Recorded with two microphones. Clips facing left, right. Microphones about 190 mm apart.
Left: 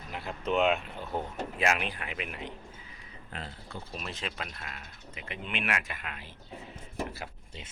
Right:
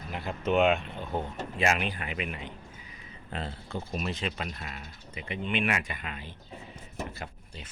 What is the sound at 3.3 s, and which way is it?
Speech, 25° right (ahead or behind).